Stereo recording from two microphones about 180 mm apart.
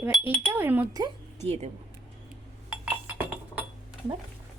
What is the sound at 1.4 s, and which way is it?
Speech, 35° right (ahead or behind).